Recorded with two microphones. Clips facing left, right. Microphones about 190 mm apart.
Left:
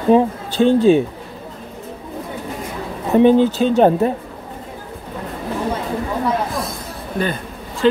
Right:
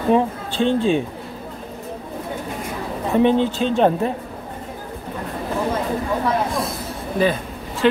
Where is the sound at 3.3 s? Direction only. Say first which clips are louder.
Left 5 dB; 40° left (ahead or behind).